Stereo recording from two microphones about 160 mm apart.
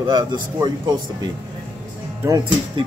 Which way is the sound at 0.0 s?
25° right (ahead or behind).